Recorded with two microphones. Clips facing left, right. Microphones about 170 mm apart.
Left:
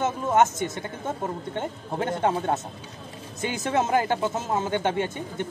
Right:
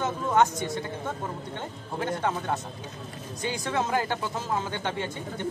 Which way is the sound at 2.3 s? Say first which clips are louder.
Left 4 dB; 25° left (ahead or behind).